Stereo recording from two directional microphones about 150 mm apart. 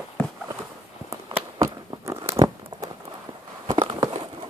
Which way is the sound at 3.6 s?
30° right (ahead or behind).